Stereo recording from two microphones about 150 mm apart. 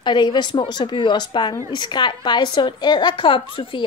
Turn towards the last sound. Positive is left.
turn(degrees=35)  # may be behind; listen again after turning